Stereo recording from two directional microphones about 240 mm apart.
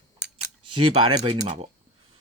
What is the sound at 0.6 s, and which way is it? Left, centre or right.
Speech, right.